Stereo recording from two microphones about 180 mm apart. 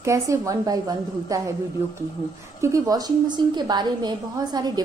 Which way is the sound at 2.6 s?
20° right (ahead or behind).